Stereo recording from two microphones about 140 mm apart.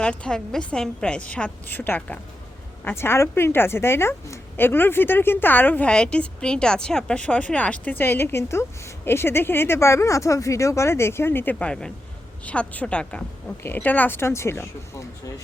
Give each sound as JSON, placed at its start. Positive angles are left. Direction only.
{"t": 0.0, "sound": "a woman's voice", "side_deg": 5}